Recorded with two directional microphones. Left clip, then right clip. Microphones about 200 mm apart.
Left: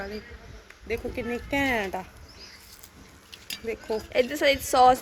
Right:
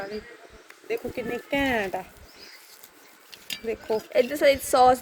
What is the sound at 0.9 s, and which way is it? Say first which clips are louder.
Speech: right 1 dB; 20° right (ahead or behind).